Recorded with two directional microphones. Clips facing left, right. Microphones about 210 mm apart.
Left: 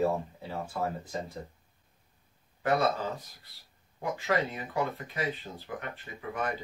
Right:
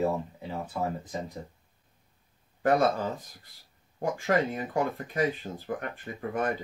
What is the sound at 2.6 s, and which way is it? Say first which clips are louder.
Speech: right 4 dB; 45° right (ahead or behind).